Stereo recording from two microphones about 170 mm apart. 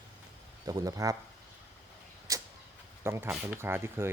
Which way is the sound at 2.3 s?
20° right (ahead or behind).